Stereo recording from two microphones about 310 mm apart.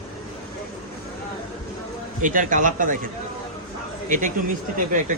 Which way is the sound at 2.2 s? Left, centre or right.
Right.